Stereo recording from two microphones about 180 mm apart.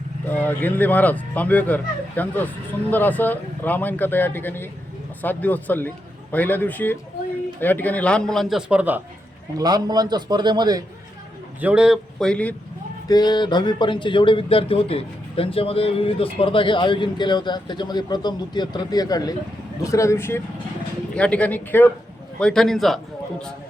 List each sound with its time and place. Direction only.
0.3 s a man's voice: 10° left (ahead or behind); by 9.0 s 5° right (ahead or behind)
9.6 s a man's voice: 20° right (ahead or behind)
11.6 s a man's voice: 5° right (ahead or behind)
13.1 s a man's voice: 25° left (ahead or behind); by 23.0 s centre (ahead or behind)